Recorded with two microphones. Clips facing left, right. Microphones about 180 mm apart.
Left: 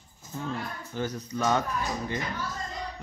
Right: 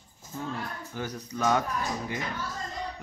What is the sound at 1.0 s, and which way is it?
Speech, 15° right (ahead or behind).